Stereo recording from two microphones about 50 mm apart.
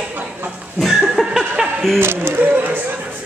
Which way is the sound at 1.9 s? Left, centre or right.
Right.